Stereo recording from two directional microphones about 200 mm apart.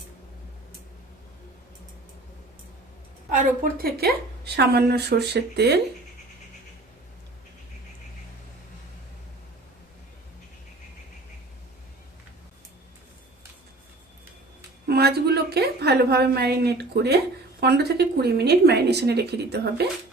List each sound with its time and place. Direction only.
3.2 s a woman's voice: 45° right (ahead or behind)
14.8 s a sound: 55° right (ahead or behind)
17.6 s a woman's voice: 55° right (ahead or behind)